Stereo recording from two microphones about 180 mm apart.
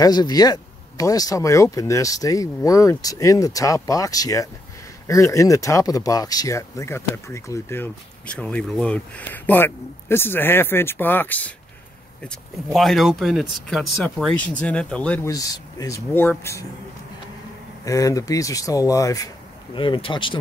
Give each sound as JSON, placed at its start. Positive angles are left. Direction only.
{"t": 0.0, "sound": "speech", "side_deg": 20}
{"t": 15.2, "sound": "speech", "side_deg": 20}
{"t": 17.8, "sound": "speech", "side_deg": 20}